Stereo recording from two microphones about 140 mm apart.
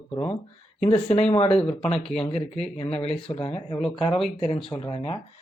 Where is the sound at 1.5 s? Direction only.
5° left (ahead or behind).